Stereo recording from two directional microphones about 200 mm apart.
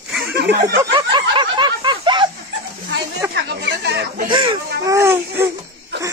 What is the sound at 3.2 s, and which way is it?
Chatter, 10° right (ahead or behind).